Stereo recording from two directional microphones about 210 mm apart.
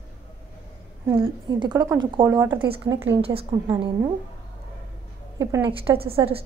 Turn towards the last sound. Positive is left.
turn(degrees=-20)  # may be behind; listen again after turning